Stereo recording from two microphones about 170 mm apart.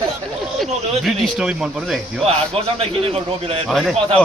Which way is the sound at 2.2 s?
35° right (ahead or behind).